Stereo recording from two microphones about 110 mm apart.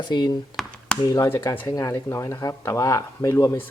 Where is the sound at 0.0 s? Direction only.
40° left (ahead or behind).